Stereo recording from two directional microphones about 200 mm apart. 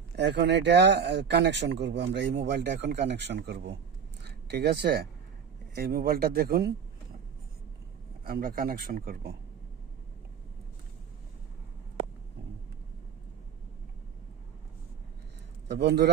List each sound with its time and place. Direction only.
0.1 s speech: 60° right (ahead or behind)
8.2 s speech: 45° right (ahead or behind)
15.8 s speech: 60° right (ahead or behind)